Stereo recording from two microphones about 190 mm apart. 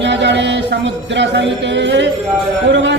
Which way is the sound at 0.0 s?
70° right (ahead or behind).